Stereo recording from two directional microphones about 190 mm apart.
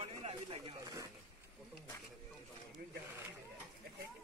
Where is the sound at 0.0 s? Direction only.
30° right (ahead or behind).